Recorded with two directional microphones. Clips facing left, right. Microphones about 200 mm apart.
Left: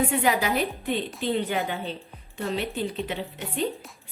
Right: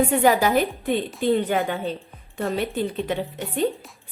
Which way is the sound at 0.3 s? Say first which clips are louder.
Right 5 dB; 45° right (ahead or behind).